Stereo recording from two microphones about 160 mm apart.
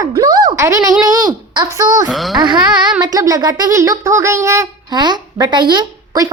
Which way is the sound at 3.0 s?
25° right (ahead or behind).